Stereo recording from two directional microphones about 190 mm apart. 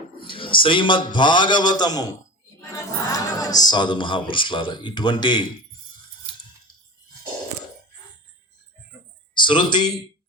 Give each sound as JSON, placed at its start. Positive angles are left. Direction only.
{"t": 0.2, "sound": "a man's voice", "side_deg": 25}
{"t": 9.4, "sound": "a man's voice", "side_deg": 25}